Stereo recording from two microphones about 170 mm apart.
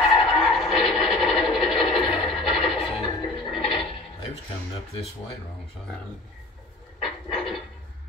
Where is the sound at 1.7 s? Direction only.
30° left (ahead or behind).